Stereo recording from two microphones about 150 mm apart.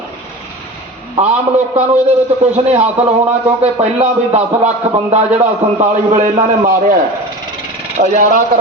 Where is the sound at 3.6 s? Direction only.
45° right (ahead or behind).